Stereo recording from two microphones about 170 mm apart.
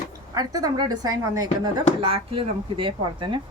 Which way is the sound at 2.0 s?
30° right (ahead or behind).